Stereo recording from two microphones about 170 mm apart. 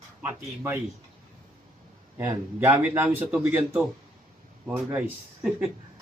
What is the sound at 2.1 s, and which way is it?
A man's voice, 15° right (ahead or behind).